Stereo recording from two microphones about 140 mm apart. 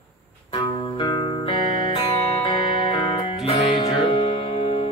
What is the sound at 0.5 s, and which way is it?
Music, 35° left (ahead or behind).